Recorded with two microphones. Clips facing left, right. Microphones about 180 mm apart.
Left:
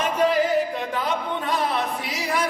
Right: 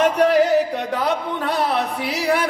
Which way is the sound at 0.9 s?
75° right (ahead or behind).